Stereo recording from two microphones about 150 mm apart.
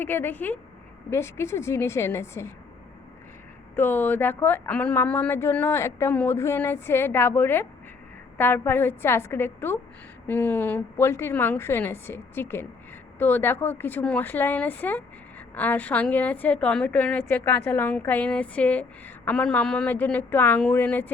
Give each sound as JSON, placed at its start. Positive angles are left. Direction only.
{"t": 0.0, "sound": "a woman's voice", "side_deg": 15}
{"t": 3.8, "sound": "a woman's voice", "side_deg": 15}